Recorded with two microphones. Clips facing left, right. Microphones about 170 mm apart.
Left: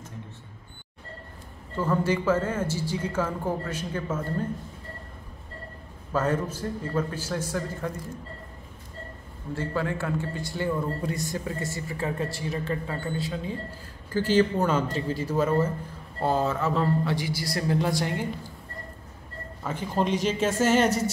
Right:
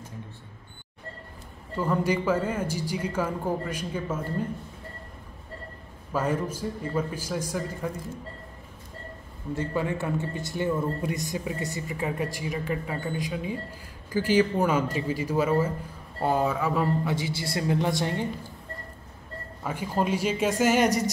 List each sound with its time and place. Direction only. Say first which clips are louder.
1.8 s speech: even; 15° right (ahead or behind)
6.1 s speech: left 1 dB; 10° right (ahead or behind)
9.6 s a man's voice: even; 20° right (ahead or behind)
19.6 s speech: left 1 dB; 10° right (ahead or behind)